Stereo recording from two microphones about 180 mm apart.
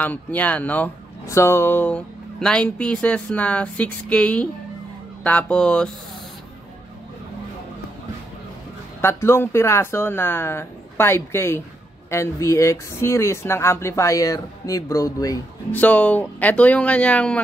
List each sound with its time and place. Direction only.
0.0 s speech: 10° left (ahead or behind)
9.0 s speech: 15° left (ahead or behind)
15.7 s speech: 10° left (ahead or behind)